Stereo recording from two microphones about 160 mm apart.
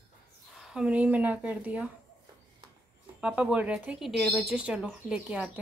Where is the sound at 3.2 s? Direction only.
5° right (ahead or behind).